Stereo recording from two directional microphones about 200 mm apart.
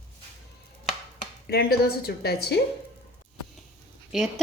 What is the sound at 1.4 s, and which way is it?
A woman's voice, 50° left (ahead or behind).